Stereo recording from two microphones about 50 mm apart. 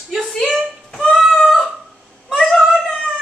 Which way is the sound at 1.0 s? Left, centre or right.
Centre.